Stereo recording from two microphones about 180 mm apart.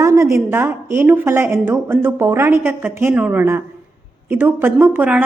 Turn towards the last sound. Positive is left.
turn(degrees=-10)  # may be behind; listen again after turning